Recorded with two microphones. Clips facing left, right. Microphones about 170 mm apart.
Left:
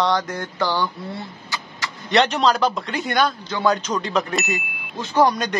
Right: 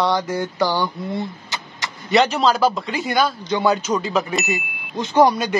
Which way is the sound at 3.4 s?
10° right (ahead or behind).